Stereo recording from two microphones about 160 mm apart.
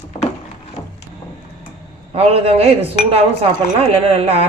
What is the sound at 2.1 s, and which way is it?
A woman's voice, 40° right (ahead or behind).